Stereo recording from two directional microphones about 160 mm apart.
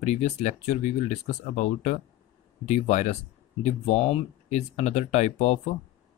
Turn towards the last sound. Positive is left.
turn(degrees=45)  # may be behind; listen again after turning